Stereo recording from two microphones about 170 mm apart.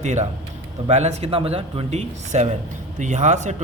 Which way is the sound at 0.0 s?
45° right (ahead or behind).